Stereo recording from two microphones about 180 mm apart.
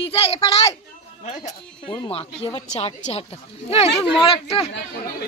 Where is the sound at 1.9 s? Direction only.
25° left (ahead or behind).